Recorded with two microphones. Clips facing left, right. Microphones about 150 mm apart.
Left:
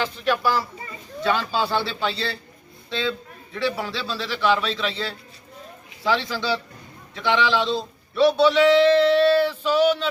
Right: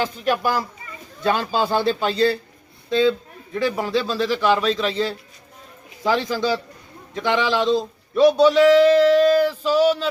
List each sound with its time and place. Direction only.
0.0 s a man's voice: 45° right (ahead or behind)
3.5 s a man's voice: 45° right (ahead or behind)
9.6 s a sound: 40° right (ahead or behind)